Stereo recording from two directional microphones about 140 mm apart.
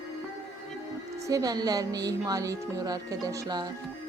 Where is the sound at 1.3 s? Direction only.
25° right (ahead or behind).